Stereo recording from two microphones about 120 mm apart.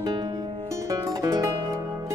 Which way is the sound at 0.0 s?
35° right (ahead or behind).